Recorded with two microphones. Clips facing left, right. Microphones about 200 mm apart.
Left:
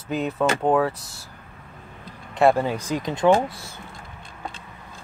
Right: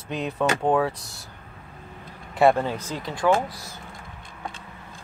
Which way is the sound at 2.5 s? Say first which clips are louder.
Left 3 dB; 15° left (ahead or behind).